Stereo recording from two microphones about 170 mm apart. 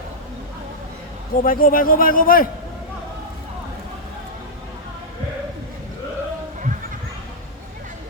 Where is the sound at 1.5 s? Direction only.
55° left (ahead or behind).